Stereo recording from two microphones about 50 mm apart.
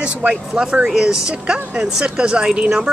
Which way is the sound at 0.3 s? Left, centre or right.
Centre.